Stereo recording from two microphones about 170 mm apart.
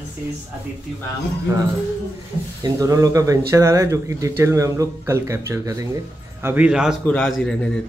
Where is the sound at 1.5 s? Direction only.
15° right (ahead or behind).